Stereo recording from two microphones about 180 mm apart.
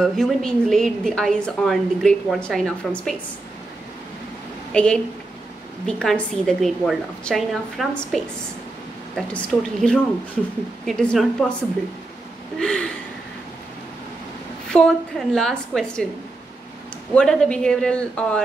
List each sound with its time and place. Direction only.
0.0 s a woman's voice: centre (ahead or behind)
4.7 s a woman's voice: 5° left (ahead or behind)
12.5 s a woman's voice: 5° left (ahead or behind)
14.7 s a woman's voice: 5° left (ahead or behind)
17.1 s a woman's voice: 5° left (ahead or behind)